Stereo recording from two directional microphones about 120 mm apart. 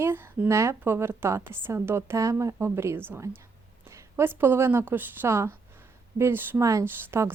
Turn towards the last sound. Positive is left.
turn(degrees=-20)  # may be behind; listen again after turning